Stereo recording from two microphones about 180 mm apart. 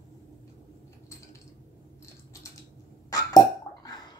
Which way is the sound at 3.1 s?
20° left (ahead or behind).